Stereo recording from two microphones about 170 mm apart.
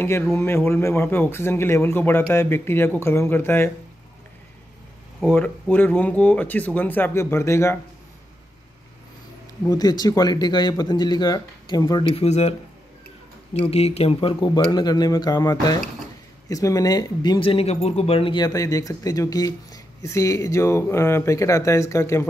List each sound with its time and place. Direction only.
0.0 s speech: 15° left (ahead or behind)
5.2 s speech: 10° left (ahead or behind)
9.7 s speech: 25° left (ahead or behind)